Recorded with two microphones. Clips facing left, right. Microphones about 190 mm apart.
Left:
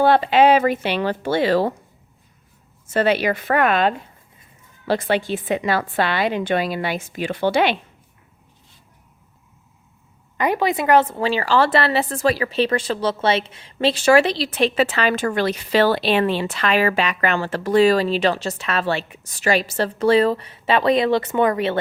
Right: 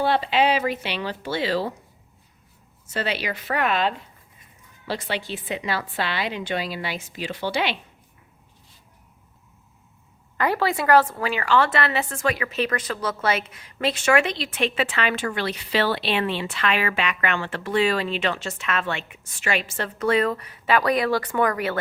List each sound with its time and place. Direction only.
0.0 s a woman's voice: 50° left (ahead or behind)
2.9 s a woman's voice: 50° left (ahead or behind)
10.3 s a woman's voice: 20° left (ahead or behind)